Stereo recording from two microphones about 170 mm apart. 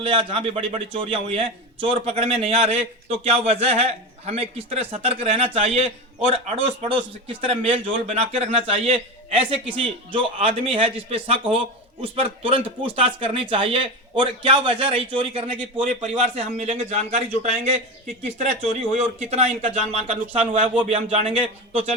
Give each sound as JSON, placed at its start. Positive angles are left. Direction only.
{"t": 0.0, "sound": "speech", "side_deg": -30}